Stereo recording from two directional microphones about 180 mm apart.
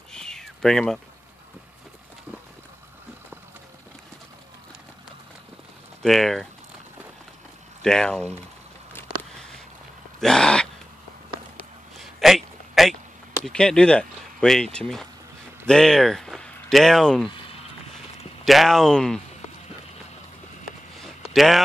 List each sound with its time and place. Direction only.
0.1 s a sound: 5° left (ahead or behind)
6.0 s speech: centre (ahead or behind)
7.8 s speech: 5° left (ahead or behind)
10.2 s speech: 5° left (ahead or behind)
12.0 s a sound: centre (ahead or behind)
13.5 s speech: 5° left (ahead or behind)
17.3 s a sound: 30° left (ahead or behind)
18.4 s speech: centre (ahead or behind)
21.3 s speech: centre (ahead or behind)